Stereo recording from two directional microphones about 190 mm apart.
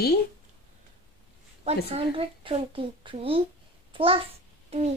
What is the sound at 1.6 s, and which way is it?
A woman's voice, 30° right (ahead or behind).